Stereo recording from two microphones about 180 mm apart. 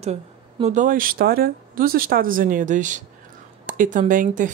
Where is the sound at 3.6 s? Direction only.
45° right (ahead or behind).